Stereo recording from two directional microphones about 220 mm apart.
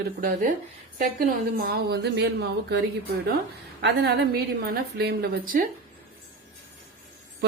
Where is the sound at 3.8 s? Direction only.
50° right (ahead or behind).